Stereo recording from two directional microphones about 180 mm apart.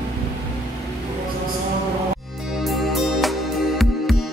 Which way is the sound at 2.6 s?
Centre (ahead or behind).